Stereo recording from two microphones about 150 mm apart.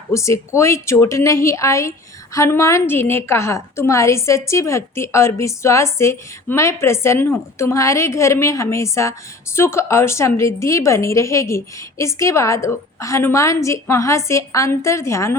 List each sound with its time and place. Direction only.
0.1 s a woman's voice: 20° left (ahead or behind)